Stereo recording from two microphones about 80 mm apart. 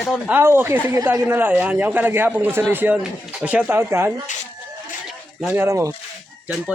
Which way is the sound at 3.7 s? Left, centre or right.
Right.